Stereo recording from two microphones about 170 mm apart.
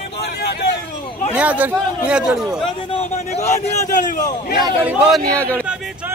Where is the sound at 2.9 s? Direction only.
40° left (ahead or behind).